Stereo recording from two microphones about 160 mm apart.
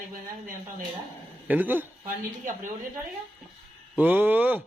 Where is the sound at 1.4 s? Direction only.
10° right (ahead or behind).